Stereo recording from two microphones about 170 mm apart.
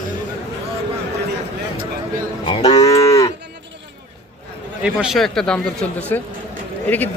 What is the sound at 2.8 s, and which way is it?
Cattle, 20° left (ahead or behind).